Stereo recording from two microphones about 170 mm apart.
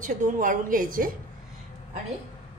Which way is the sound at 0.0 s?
50° right (ahead or behind).